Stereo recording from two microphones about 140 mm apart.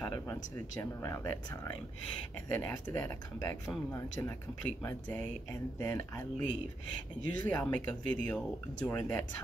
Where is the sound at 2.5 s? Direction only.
15° left (ahead or behind).